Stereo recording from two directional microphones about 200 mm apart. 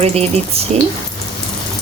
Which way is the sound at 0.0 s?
30° right (ahead or behind).